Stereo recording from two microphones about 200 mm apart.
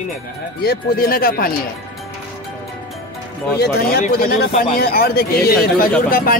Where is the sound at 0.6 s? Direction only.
50° left (ahead or behind).